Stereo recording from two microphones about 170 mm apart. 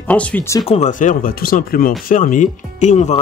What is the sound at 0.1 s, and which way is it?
Speech, 10° left (ahead or behind).